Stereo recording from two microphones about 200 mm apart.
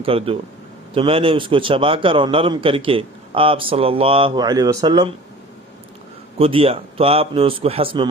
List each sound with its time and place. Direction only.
0.0 s a man's voice: 30° right (ahead or behind)
6.4 s a man's voice: 30° right (ahead or behind)